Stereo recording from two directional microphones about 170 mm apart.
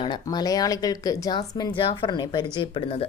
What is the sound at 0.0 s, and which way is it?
A woman's voice, 25° left (ahead or behind).